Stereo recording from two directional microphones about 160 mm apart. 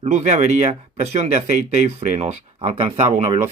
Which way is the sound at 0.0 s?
45° right (ahead or behind).